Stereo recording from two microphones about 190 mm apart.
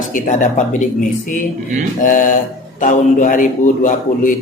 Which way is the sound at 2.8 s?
40° left (ahead or behind).